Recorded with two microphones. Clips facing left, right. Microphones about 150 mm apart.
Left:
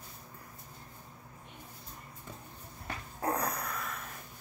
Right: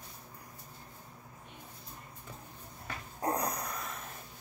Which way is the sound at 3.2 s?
15° right (ahead or behind).